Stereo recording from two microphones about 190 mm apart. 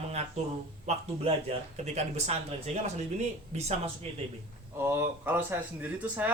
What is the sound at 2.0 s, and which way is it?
Speech, 35° right (ahead or behind).